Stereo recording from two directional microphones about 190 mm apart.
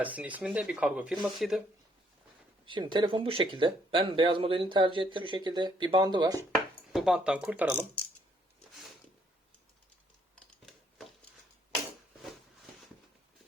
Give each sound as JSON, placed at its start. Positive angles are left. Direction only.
{"t": 0.0, "sound": "speech", "side_deg": -10}
{"t": 2.6, "sound": "speech", "side_deg": -25}
{"t": 6.9, "sound": "speech", "side_deg": -5}